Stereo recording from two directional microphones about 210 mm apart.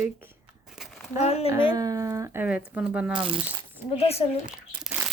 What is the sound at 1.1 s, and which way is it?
Speech, 30° left (ahead or behind).